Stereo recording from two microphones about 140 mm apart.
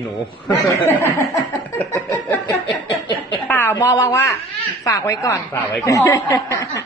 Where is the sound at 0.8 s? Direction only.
20° left (ahead or behind).